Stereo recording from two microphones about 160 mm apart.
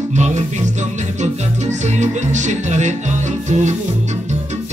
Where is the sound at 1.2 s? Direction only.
45° right (ahead or behind).